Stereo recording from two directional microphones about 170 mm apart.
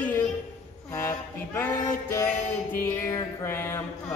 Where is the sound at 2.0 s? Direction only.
15° left (ahead or behind).